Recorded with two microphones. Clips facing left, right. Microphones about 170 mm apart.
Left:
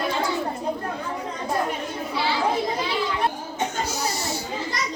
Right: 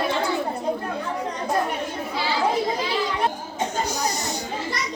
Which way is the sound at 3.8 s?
15° right (ahead or behind).